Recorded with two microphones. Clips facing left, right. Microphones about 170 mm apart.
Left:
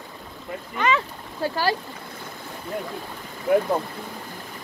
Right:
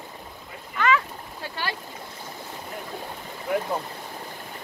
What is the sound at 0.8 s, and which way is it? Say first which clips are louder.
Speech: even; 20° left (ahead or behind).